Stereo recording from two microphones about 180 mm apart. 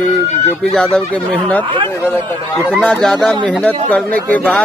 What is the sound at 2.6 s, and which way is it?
Speech, 5° left (ahead or behind).